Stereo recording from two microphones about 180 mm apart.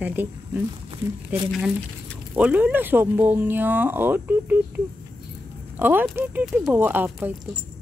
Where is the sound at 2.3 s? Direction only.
10° right (ahead or behind).